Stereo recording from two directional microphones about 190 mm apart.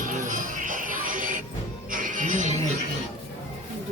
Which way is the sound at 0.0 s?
45° right (ahead or behind).